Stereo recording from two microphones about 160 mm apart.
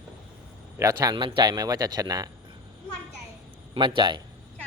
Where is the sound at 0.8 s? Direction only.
20° right (ahead or behind).